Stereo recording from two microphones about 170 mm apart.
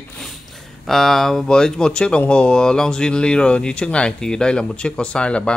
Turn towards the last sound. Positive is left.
turn(degrees=5)  # may be behind; listen again after turning